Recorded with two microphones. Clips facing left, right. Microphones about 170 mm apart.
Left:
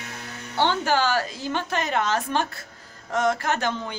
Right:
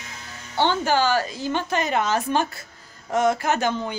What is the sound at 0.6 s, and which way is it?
A woman's voice, centre (ahead or behind).